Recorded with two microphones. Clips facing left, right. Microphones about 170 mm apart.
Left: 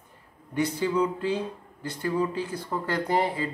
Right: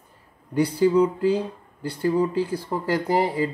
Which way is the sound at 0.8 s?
30° right (ahead or behind).